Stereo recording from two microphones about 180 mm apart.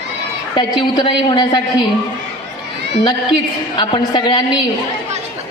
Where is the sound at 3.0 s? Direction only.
25° left (ahead or behind).